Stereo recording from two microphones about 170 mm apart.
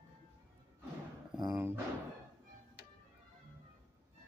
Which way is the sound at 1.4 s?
15° right (ahead or behind).